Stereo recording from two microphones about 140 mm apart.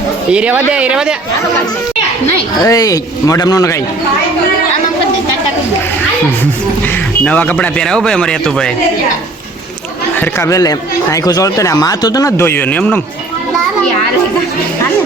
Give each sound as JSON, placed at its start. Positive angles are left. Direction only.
{"t": 0.3, "sound": "speech", "side_deg": -10}
{"t": 2.6, "sound": "speech", "side_deg": 25}
{"t": 7.3, "sound": "speech", "side_deg": 10}
{"t": 10.2, "sound": "speech", "side_deg": 20}